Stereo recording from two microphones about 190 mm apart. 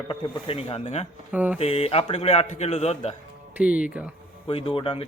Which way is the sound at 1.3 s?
5° right (ahead or behind).